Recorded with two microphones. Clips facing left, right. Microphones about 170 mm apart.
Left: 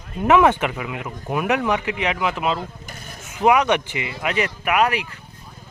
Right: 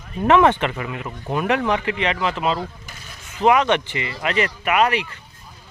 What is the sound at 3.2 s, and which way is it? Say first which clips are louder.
Speech: even; 10° left (ahead or behind).